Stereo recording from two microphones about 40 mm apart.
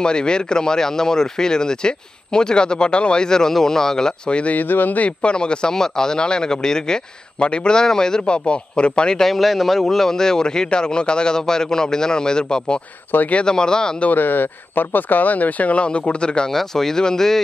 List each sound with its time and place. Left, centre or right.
0.0 s speech: left
4.3 s speech: left
4.6 s speech: left
5.0 s speech: left
9.2 s a man's voice: centre
9.8 s speech: centre
14.1 s speech: left
16.5 s speech: centre